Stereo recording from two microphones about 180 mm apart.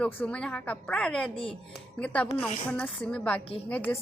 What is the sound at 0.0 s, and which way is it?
A woman's voice, 5° left (ahead or behind).